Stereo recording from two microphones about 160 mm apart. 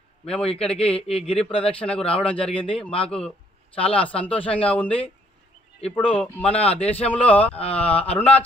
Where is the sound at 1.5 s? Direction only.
35° left (ahead or behind).